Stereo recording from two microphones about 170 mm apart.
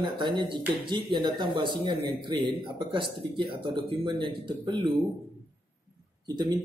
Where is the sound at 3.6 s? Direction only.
30° right (ahead or behind).